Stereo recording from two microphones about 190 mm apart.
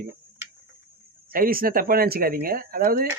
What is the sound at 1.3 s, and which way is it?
A man's voice, 50° right (ahead or behind).